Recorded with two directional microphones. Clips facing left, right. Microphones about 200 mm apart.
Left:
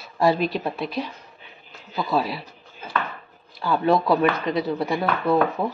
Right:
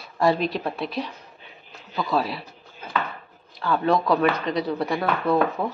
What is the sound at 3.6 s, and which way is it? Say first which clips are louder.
Speech: left 1 dB; 10° left (ahead or behind).